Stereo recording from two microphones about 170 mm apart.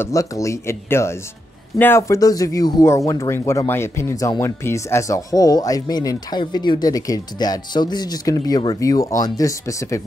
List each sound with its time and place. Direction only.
0.0 s speech: 20° left (ahead or behind)